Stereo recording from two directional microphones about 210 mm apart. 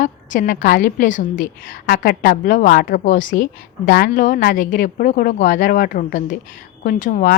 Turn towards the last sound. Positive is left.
turn(degrees=40)  # may be behind; listen again after turning